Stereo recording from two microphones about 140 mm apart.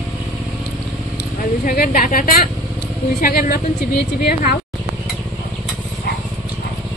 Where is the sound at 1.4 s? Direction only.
80° left.